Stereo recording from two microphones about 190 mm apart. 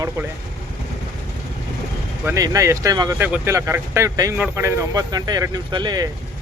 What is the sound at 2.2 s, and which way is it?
Speech, 15° right (ahead or behind).